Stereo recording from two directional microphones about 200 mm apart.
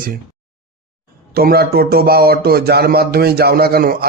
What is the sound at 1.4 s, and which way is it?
Speech, 50° right (ahead or behind).